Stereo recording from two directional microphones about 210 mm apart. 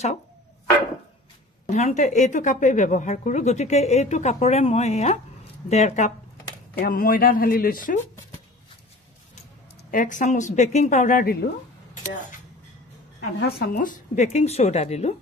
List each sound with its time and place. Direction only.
1.7 s a woman's voice: 35° left (ahead or behind)
6.8 s speech: 45° left (ahead or behind)
9.8 s a woman's voice: 40° left (ahead or behind)
13.4 s a woman's voice: 45° left (ahead or behind)